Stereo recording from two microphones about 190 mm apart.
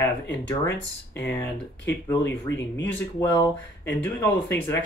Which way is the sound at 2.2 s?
65° left (ahead or behind).